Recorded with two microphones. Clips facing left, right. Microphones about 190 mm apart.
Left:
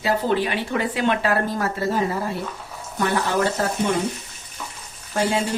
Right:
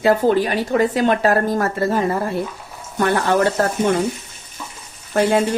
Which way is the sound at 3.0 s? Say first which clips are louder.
Right 5 dB; 60° right (ahead or behind).